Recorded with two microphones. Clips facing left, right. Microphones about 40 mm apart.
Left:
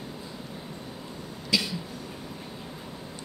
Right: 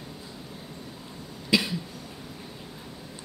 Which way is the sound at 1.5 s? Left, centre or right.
Centre.